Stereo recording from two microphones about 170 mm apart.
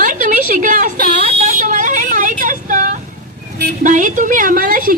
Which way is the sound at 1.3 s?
45° right (ahead or behind).